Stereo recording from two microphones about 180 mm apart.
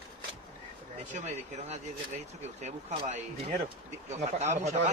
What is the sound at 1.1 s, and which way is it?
Speech, 40° right (ahead or behind).